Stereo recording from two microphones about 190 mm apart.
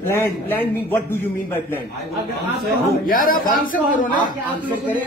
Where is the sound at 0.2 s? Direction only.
10° left (ahead or behind).